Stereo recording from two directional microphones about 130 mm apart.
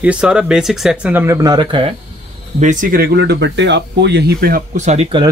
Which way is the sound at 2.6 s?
75° right (ahead or behind).